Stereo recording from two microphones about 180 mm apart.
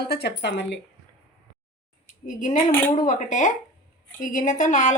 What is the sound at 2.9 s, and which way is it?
A woman's voice, 45° left (ahead or behind).